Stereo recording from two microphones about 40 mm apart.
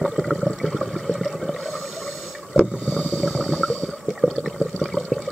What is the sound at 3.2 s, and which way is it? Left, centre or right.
Snort, centre.